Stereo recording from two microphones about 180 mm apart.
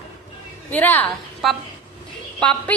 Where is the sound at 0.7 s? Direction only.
10° left (ahead or behind).